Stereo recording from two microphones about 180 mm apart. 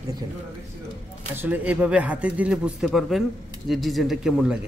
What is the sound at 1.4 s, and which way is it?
A woman's voice, 10° right (ahead or behind).